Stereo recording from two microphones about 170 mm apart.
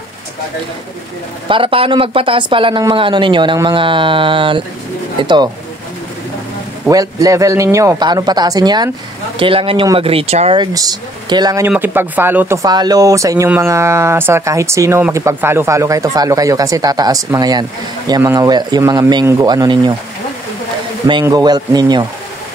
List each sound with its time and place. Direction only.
1.5 s speech: 30° right (ahead or behind)
6.9 s speech: 20° right (ahead or behind); by 10.6 s 35° right (ahead or behind)
10.6 s speech: 20° right (ahead or behind)
11.6 s speech: 10° right (ahead or behind)
12.6 s speech: 25° right (ahead or behind)
21.1 s speech: 20° right (ahead or behind)